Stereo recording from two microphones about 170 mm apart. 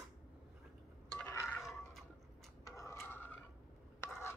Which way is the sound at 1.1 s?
10° left (ahead or behind).